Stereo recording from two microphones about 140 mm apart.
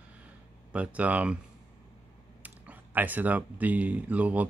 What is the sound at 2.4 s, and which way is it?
Speech, 10° right (ahead or behind).